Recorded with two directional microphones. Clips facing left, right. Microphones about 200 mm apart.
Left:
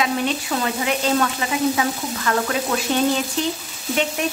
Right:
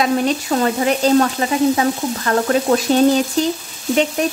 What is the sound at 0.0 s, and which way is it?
Sizzle, 40° right (ahead or behind).